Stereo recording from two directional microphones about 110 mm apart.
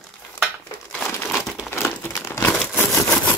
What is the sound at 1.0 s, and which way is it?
Crumpling, 20° left (ahead or behind).